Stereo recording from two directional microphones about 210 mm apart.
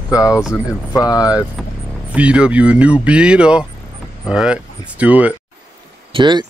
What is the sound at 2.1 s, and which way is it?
Speech, 5° right (ahead or behind).